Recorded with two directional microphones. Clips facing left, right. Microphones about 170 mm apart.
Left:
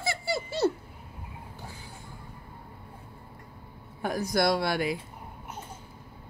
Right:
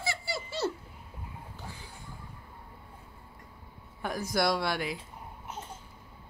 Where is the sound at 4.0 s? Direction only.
45° left (ahead or behind).